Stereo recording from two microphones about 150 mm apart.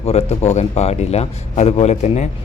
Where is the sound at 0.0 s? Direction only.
45° left (ahead or behind).